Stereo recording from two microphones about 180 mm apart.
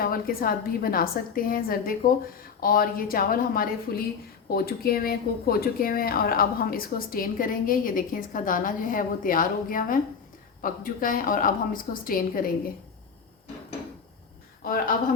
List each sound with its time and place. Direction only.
0.0 s a woman's voice: 55° left (ahead or behind)